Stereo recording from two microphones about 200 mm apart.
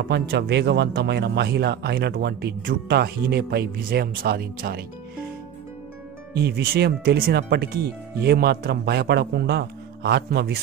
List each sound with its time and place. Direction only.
0.1 s speech: 55° right (ahead or behind)
6.3 s speech: 55° right (ahead or behind)